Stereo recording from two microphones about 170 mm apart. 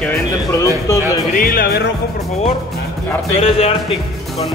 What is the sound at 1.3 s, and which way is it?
Speech, 60° left (ahead or behind).